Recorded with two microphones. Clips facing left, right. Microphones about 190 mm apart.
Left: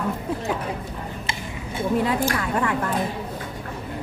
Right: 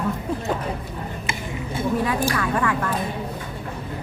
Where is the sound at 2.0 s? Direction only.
25° left (ahead or behind).